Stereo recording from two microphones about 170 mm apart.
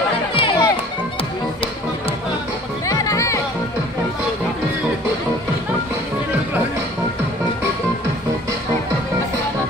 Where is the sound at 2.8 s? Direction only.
20° left (ahead or behind).